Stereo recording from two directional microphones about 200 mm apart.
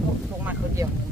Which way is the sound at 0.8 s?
15° right (ahead or behind).